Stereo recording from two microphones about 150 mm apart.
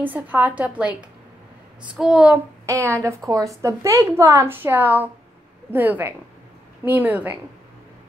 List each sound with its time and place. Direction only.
0.0 s a woman's voice: 10° right (ahead or behind)
2.0 s a woman's voice: 5° right (ahead or behind)